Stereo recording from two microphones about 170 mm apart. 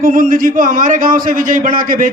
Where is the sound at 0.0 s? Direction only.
55° right (ahead or behind).